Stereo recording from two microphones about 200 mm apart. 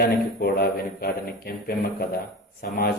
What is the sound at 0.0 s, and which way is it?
Speech, 50° left (ahead or behind).